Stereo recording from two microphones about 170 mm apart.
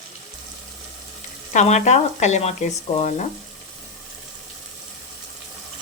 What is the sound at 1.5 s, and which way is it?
Speech, 45° left (ahead or behind).